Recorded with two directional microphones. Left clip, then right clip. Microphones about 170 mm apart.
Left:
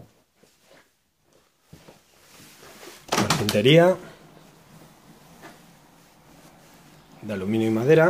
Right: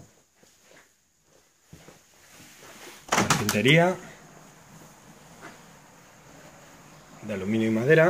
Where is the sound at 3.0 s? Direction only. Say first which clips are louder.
Even; 15° left (ahead or behind).